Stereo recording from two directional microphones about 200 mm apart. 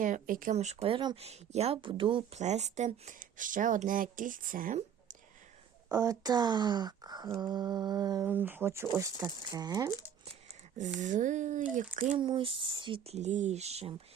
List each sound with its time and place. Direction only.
0.0 s speech: 40° right (ahead or behind)
5.9 s speech: 15° right (ahead or behind)
11.0 s speech: 40° right (ahead or behind)